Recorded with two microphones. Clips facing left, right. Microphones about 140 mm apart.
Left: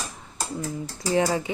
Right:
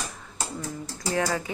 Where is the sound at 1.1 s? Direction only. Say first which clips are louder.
Left 4 dB; 25° left (ahead or behind).